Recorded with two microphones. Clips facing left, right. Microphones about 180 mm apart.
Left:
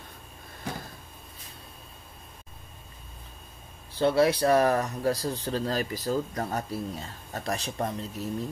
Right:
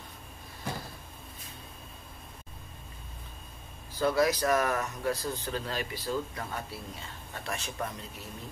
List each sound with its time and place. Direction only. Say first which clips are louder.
3.9 s speech: left 4 dB; 30° left (ahead or behind)